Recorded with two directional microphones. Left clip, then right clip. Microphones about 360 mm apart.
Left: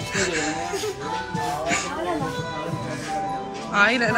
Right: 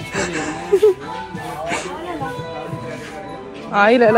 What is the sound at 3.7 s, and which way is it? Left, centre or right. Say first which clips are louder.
Speech: right 7 dB; centre.